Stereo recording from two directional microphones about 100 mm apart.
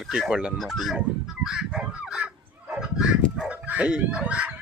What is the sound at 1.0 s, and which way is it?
Fowl, 5° right (ahead or behind).